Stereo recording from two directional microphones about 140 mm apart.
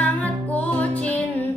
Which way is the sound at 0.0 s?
10° left (ahead or behind).